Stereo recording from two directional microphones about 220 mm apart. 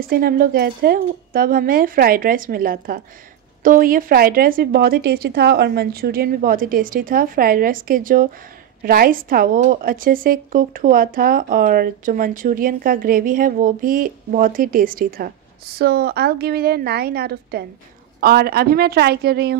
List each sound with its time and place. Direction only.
0.1 s a woman's voice: 40° right (ahead or behind)